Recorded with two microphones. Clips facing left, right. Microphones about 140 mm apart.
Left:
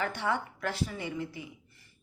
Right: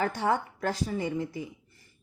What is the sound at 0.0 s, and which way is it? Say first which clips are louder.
Speech: right 4 dB; 40° right (ahead or behind).